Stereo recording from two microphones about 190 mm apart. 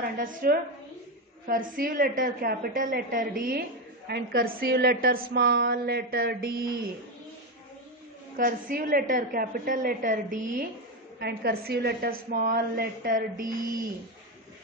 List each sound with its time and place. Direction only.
0.0 s a woman's voice: 45° right (ahead or behind)
8.4 s a woman's voice: 45° right (ahead or behind)
11.1 s a woman's voice: 55° right (ahead or behind)